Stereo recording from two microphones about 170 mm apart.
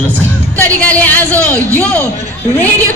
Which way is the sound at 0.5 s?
10° left (ahead or behind).